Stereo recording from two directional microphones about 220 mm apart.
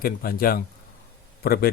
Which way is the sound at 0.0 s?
40° left (ahead or behind).